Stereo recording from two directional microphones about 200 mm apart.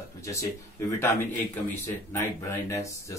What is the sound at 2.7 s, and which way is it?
Speech, 15° left (ahead or behind).